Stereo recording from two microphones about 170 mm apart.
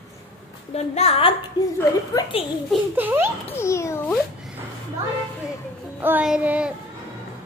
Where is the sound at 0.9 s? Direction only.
35° left (ahead or behind).